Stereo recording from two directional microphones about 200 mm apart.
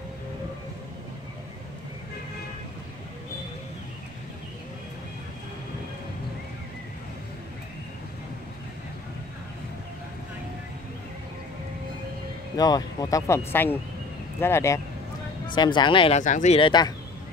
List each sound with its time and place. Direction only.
12.5 s speech: 20° left (ahead or behind)
16.2 s speech: 40° left (ahead or behind)